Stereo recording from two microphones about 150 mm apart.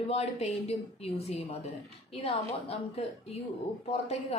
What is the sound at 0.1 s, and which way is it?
A woman's voice, 45° left (ahead or behind).